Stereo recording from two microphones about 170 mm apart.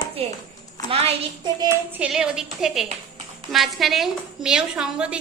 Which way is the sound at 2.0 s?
5° right (ahead or behind).